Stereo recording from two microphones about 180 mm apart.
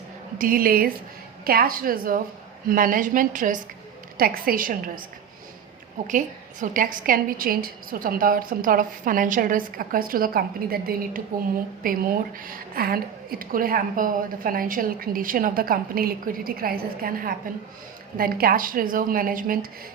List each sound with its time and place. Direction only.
0.3 s a woman's voice: 50° right (ahead or behind)
6.1 s a woman's voice: 45° right (ahead or behind)